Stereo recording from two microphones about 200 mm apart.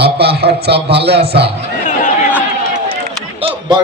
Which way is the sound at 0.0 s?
55° right (ahead or behind).